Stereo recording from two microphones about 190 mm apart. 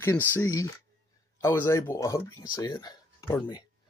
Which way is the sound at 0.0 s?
15° left (ahead or behind).